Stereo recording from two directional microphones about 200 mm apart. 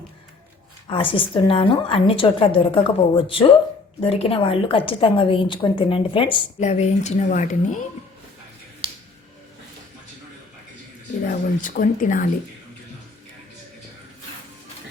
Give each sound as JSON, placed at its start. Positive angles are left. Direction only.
{"t": 0.9, "sound": "a woman's voice", "side_deg": 25}
{"t": 11.3, "sound": "speech", "side_deg": 40}